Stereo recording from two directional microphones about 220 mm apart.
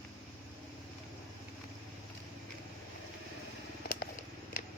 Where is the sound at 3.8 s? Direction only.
45° left (ahead or behind).